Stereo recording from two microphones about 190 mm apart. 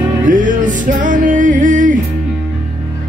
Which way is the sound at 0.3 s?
45° right (ahead or behind).